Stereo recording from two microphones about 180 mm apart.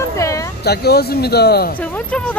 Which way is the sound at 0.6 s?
60° left (ahead or behind).